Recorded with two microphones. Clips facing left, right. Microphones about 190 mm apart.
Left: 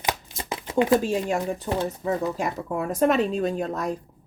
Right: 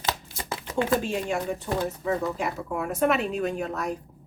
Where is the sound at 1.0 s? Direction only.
40° left (ahead or behind).